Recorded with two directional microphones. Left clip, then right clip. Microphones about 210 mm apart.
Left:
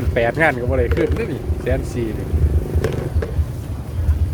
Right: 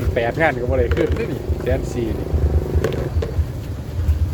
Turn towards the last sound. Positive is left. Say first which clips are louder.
# right 1 dB
turn(degrees=0)  # may be behind; listen again after turning